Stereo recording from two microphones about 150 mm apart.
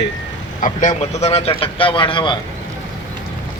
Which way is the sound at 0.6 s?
55° left (ahead or behind).